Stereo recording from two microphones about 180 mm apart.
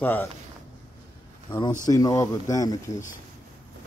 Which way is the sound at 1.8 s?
20° left (ahead or behind).